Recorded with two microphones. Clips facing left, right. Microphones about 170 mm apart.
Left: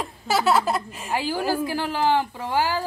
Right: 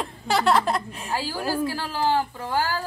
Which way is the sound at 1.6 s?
20° left (ahead or behind).